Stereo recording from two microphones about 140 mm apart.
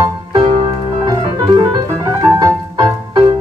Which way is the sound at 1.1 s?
30° right (ahead or behind).